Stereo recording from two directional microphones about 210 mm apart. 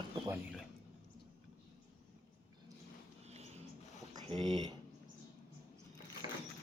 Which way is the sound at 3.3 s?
30° right (ahead or behind).